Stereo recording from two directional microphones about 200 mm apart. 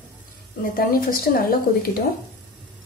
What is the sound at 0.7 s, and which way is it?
Speech, 45° left (ahead or behind).